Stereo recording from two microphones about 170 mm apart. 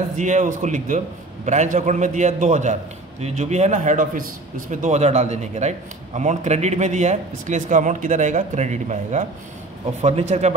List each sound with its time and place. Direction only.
0.2 s a man's voice: 45° right (ahead or behind)